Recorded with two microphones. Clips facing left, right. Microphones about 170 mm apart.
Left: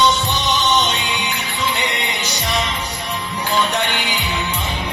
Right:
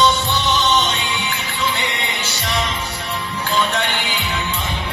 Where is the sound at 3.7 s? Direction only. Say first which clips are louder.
Left 1 dB; 15° left (ahead or behind).